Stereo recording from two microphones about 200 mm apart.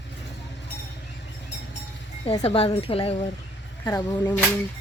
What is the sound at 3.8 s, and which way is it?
Speech, 20° left (ahead or behind).